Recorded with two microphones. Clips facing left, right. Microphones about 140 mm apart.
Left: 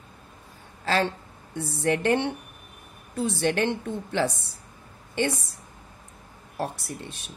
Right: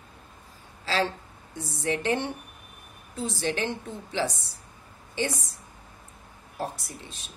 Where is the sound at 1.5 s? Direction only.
60° left (ahead or behind).